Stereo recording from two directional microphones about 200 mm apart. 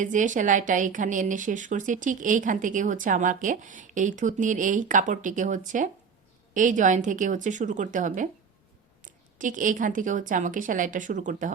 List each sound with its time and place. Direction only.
0.0 s a woman's voice: 40° right (ahead or behind)